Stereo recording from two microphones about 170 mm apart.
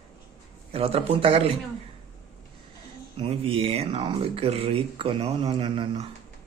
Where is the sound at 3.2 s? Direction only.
35° right (ahead or behind).